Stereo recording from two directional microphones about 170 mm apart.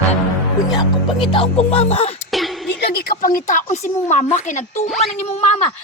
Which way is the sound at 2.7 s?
75° left (ahead or behind).